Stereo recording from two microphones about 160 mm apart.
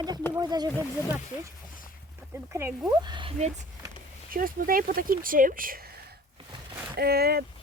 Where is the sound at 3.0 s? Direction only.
30° right (ahead or behind).